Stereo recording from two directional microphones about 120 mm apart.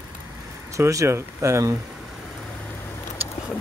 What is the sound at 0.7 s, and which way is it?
Speech, 25° right (ahead or behind).